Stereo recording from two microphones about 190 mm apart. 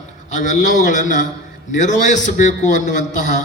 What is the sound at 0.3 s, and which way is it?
A man's voice, 40° left (ahead or behind).